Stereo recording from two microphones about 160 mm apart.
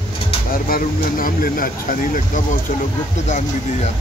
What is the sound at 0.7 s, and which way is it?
Speech, 60° left (ahead or behind).